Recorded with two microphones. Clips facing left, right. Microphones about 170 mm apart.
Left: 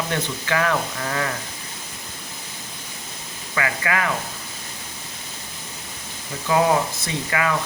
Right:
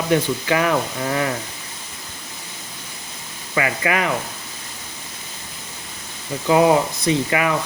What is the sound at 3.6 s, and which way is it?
Speech, 20° right (ahead or behind).